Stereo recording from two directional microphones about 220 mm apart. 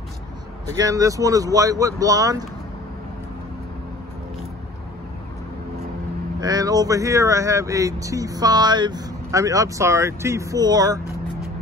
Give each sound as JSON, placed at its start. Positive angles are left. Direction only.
{"t": 0.7, "sound": "speech", "side_deg": -15}
{"t": 6.4, "sound": "speech", "side_deg": -15}